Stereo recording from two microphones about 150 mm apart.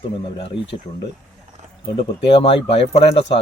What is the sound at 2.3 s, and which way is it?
Speech, 40° left (ahead or behind).